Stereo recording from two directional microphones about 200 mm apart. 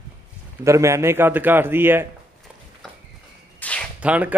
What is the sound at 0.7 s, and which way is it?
A man's voice, 15° right (ahead or behind).